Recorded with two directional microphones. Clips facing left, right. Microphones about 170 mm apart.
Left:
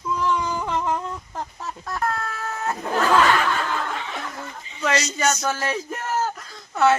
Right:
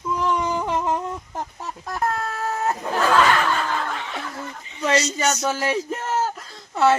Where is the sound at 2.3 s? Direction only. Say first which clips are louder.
Right 4 dB; 35° right (ahead or behind).